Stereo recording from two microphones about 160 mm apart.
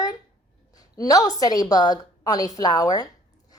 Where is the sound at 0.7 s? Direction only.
25° left (ahead or behind).